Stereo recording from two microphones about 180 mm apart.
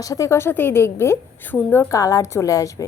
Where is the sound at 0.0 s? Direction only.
20° left (ahead or behind).